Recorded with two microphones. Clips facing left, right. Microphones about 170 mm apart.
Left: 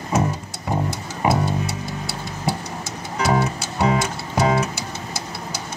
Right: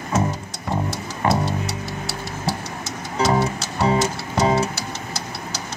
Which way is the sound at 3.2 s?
30° right (ahead or behind).